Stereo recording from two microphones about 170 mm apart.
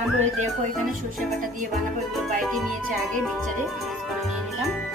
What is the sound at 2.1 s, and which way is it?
Speech, centre (ahead or behind).